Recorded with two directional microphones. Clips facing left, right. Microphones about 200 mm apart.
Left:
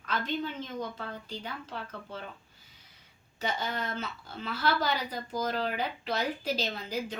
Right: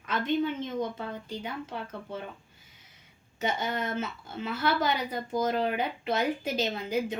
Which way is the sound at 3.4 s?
20° right (ahead or behind).